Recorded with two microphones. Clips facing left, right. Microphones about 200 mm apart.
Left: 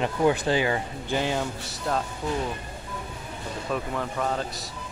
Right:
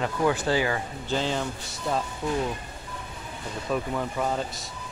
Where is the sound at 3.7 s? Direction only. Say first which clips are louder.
Right 2 dB; 5° right (ahead or behind).